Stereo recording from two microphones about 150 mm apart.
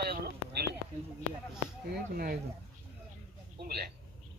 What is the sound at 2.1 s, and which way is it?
Speech, 80° right.